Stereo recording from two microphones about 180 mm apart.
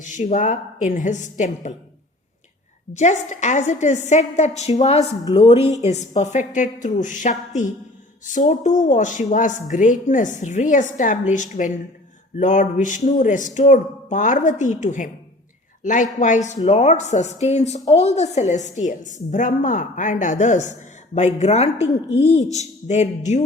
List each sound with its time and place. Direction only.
0.0 s a woman's voice: 40° left (ahead or behind)
2.9 s a woman's voice: 40° left (ahead or behind)